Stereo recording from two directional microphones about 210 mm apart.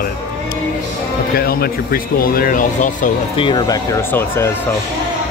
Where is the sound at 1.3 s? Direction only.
45° left (ahead or behind).